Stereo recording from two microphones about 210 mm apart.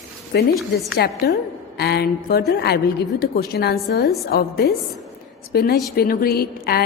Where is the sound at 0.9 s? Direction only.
50° left (ahead or behind).